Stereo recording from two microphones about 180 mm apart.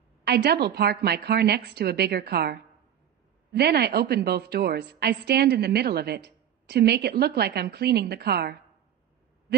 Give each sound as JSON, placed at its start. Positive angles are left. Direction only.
{"t": 0.2, "sound": "a woman's voice", "side_deg": -65}